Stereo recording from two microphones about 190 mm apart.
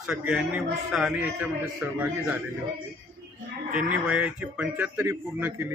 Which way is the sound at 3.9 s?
5° right (ahead or behind).